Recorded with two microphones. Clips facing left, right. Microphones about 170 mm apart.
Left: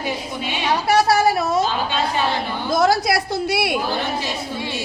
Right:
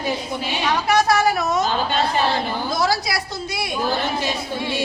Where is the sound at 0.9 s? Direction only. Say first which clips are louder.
Left 2 dB; 30° left (ahead or behind).